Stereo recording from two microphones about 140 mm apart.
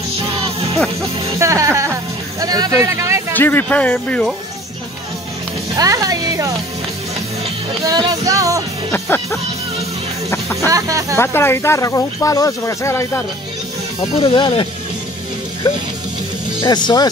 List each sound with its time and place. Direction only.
1.4 s music: 20° right (ahead or behind)
2.4 s a sound: 25° right (ahead or behind)
3.3 s speech: 15° left (ahead or behind)
5.8 s speech: 25° right (ahead or behind)
7.8 s music: 30° right (ahead or behind)
8.9 s speech: 15° left (ahead or behind)
10.3 s chicken: 20° left (ahead or behind)
10.7 s music: 25° right (ahead or behind)
11.1 s speech: 15° left (ahead or behind)
14.2 s speech: 40° left (ahead or behind)
16.6 s speech: 30° left (ahead or behind)